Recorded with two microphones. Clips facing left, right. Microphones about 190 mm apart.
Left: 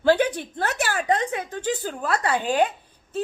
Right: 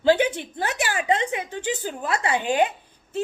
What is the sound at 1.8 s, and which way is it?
Speech, 10° right (ahead or behind).